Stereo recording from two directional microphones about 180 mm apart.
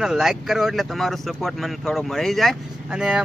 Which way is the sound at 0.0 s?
5° right (ahead or behind).